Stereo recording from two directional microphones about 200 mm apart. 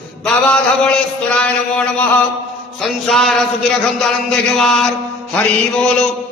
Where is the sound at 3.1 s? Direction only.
Centre (ahead or behind).